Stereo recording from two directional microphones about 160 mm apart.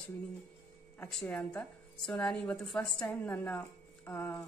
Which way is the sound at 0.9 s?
15° left (ahead or behind).